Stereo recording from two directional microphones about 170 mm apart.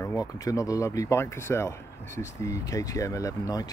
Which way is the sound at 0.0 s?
15° left (ahead or behind).